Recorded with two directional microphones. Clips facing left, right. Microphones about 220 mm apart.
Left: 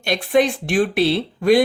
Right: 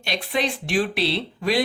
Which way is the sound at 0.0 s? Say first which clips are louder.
Left 8 dB; 50° left (ahead or behind).